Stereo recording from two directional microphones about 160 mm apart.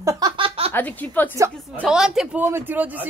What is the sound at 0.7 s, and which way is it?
Speech, 10° left (ahead or behind).